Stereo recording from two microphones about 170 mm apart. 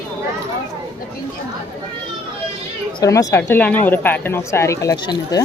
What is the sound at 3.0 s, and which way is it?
Speech, 20° left (ahead or behind).